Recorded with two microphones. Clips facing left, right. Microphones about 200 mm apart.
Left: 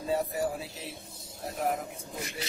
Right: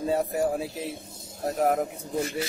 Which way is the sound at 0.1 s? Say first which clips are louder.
Right 3 dB; 50° right (ahead or behind).